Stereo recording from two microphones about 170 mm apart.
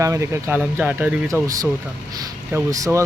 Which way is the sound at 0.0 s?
15° right (ahead or behind).